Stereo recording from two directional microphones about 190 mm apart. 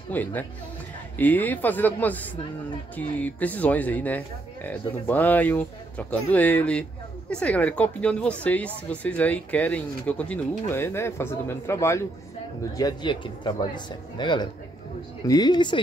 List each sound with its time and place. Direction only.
0.1 s speech: 10° left (ahead or behind)